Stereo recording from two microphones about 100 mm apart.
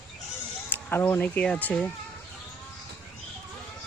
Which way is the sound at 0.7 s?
20° left (ahead or behind).